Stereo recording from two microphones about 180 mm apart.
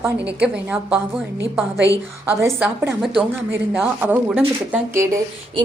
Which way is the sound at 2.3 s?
15° right (ahead or behind).